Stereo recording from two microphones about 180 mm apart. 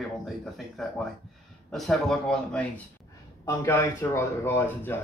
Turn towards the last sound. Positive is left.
turn(degrees=10)  # may be behind; listen again after turning